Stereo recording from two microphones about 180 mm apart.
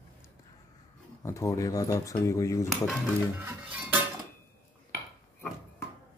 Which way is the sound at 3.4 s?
10° right (ahead or behind).